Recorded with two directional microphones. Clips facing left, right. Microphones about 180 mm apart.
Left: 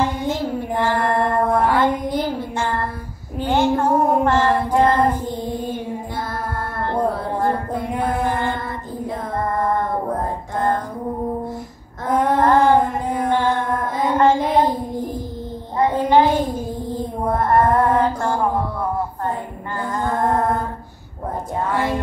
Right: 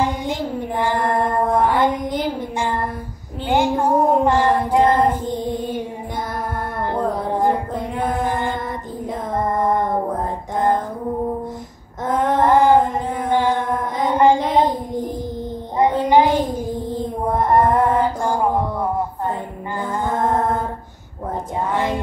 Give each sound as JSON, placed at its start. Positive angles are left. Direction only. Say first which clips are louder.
{"t": 0.0, "sound": "child singing", "louder": "left 1 dB", "side_deg": -15}
{"t": 6.9, "sound": "music", "louder": "left 1 dB", "side_deg": -15}
{"t": 9.0, "sound": "child singing", "louder": "right 2 dB", "side_deg": -20}
{"t": 12.3, "sound": "a sound", "louder": "right 1 dB", "side_deg": -15}
{"t": 13.2, "sound": "child singing", "louder": "right 1 dB", "side_deg": -15}
{"t": 20.0, "sound": "music", "louder": "even", "side_deg": -20}
{"t": 21.6, "sound": "music", "louder": "even", "side_deg": -15}